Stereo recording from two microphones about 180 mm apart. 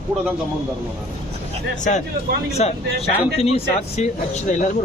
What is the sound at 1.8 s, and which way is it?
Speech, 40° left (ahead or behind).